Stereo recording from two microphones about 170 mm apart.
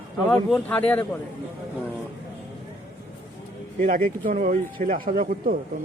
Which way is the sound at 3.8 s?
55° right (ahead or behind).